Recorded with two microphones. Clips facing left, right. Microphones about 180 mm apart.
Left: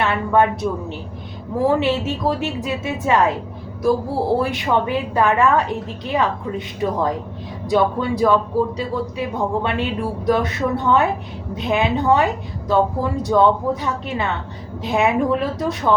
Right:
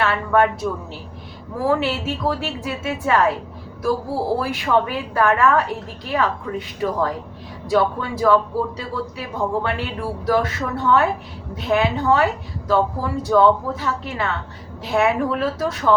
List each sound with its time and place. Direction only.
0.0 s a woman's voice: 20° left (ahead or behind)
4.4 s a woman's voice: 20° left (ahead or behind)
9.6 s a woman's voice: 20° left (ahead or behind)